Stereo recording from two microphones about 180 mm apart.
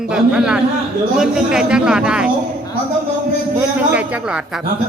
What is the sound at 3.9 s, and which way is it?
Speech, 5° right (ahead or behind).